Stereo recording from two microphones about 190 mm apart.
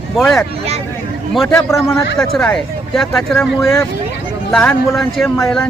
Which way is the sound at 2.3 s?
5° left (ahead or behind).